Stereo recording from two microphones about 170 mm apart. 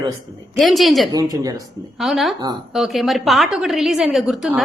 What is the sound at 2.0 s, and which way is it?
A woman's voice, centre (ahead or behind).